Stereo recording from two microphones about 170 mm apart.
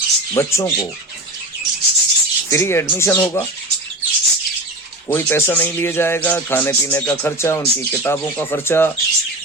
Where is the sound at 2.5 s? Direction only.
15° left (ahead or behind).